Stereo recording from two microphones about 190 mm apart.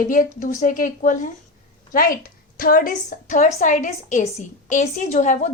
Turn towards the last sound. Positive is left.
turn(degrees=40)  # may be behind; listen again after turning